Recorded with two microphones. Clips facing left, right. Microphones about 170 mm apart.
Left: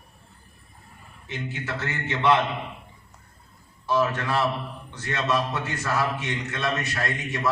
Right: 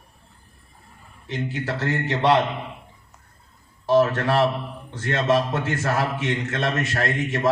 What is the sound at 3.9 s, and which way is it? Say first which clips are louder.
Speech: right 6 dB; 45° right (ahead or behind).